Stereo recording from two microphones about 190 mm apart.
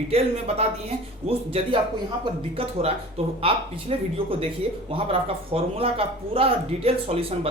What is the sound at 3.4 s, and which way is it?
Speech, 30° right (ahead or behind).